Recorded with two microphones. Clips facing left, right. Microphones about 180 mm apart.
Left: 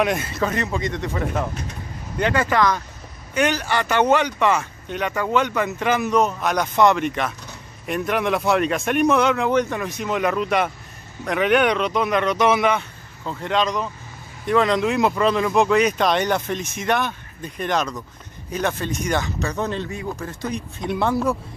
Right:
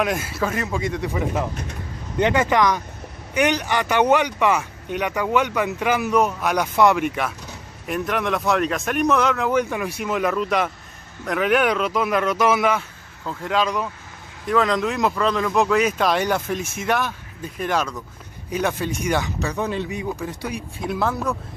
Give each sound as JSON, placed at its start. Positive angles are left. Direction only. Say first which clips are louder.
{"t": 0.0, "sound": "speech", "louder": "left 1 dB", "side_deg": -5}
{"t": 2.1, "sound": "speech", "louder": "right 1 dB", "side_deg": -20}